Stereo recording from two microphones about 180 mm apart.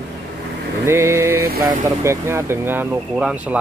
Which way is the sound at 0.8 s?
15° right (ahead or behind).